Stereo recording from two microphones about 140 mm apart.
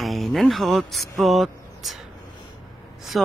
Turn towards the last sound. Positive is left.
turn(degrees=0)  # may be behind; listen again after turning